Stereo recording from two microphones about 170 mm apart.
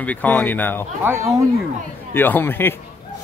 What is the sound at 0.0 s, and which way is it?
Speech, 10° left (ahead or behind).